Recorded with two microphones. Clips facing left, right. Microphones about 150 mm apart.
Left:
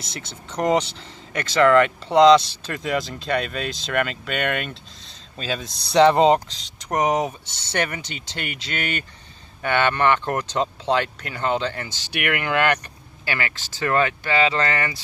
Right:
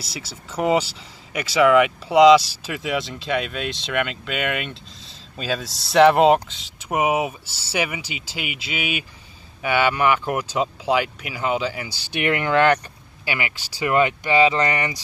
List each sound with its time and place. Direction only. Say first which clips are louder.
0.1 s speech: right 1 dB; 5° right (ahead or behind)
12.0 s speech: right 3 dB; 20° right (ahead or behind)